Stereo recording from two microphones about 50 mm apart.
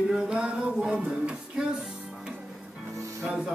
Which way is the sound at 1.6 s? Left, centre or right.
Centre.